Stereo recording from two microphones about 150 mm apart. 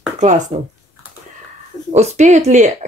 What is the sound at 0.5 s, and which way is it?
Speech, 50° right (ahead or behind).